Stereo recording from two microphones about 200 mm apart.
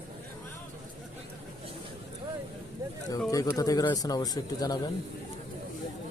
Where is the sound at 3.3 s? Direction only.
20° left (ahead or behind).